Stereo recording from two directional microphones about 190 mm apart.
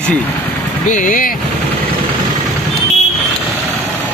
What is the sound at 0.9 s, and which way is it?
Speech, 45° left (ahead or behind).